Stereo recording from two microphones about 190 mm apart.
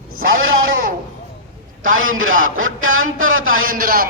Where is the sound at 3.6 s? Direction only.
50° right (ahead or behind).